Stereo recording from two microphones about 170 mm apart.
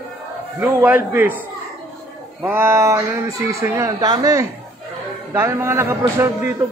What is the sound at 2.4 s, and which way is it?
Speech, 15° right (ahead or behind).